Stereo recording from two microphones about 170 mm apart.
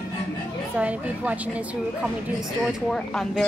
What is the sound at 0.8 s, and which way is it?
A woman's voice, 10° right (ahead or behind).